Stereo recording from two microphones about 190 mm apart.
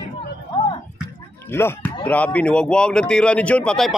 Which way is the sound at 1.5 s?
10° left (ahead or behind).